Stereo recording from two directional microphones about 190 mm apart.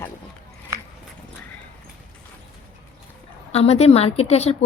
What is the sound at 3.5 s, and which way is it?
A woman's voice, 35° left (ahead or behind).